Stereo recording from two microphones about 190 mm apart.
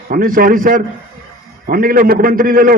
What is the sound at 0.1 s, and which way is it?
A man's voice, 50° right (ahead or behind).